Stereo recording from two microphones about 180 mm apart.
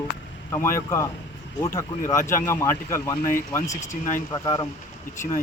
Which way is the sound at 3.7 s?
40° left (ahead or behind).